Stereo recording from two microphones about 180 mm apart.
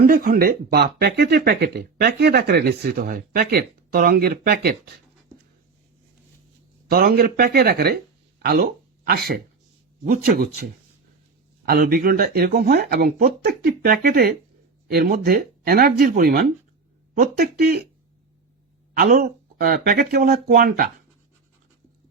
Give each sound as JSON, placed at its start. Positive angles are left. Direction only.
{"t": 0.0, "sound": "speech", "side_deg": -55}
{"t": 6.9, "sound": "speech", "side_deg": -55}
{"t": 11.6, "sound": "speech", "side_deg": -55}
{"t": 18.9, "sound": "speech", "side_deg": -55}